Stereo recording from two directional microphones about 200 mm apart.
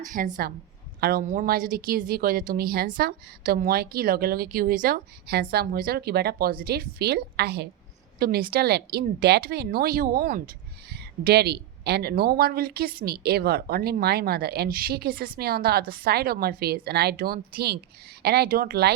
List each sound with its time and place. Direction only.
0.0 s a woman's voice: 40° right (ahead or behind)